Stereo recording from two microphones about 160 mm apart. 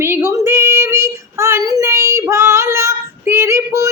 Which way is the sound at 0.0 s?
15° right (ahead or behind).